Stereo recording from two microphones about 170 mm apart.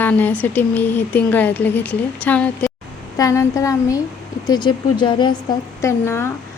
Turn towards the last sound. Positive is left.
turn(degrees=15)  # may be behind; listen again after turning